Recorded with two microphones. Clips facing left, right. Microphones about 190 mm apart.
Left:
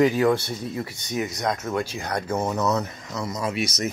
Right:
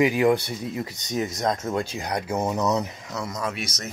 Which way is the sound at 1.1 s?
35° right (ahead or behind).